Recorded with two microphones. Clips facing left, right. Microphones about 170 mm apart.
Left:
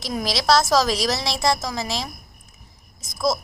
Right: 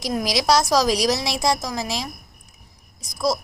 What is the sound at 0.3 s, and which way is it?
Speech, 15° right (ahead or behind).